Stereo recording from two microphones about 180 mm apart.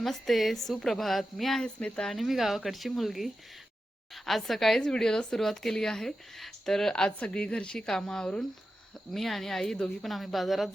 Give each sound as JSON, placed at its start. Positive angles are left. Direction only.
{"t": 0.0, "sound": "a woman's voice", "side_deg": 0}